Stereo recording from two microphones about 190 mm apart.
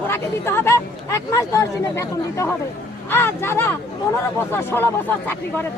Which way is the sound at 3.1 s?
10° left (ahead or behind).